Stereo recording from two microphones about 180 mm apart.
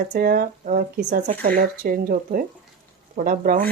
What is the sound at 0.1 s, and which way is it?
Speech, 55° right (ahead or behind).